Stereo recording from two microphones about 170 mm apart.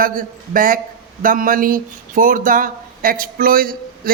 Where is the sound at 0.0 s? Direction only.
55° right (ahead or behind).